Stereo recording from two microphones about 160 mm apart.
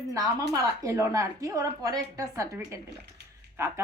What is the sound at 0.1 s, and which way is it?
A woman's voice, 20° right (ahead or behind).